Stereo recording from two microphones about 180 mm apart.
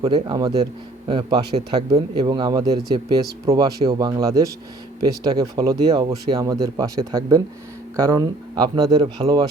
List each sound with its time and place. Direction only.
0.1 s speech: 25° right (ahead or behind)
1.5 s speech: 35° right (ahead or behind)
2.1 s speech: 25° right (ahead or behind)